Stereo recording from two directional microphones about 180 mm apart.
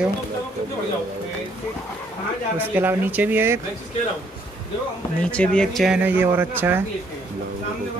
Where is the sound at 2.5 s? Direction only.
10° right (ahead or behind).